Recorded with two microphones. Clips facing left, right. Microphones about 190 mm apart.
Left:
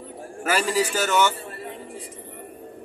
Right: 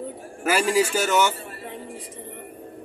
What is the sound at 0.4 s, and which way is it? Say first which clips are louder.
Speech: right 2 dB; 10° right (ahead or behind).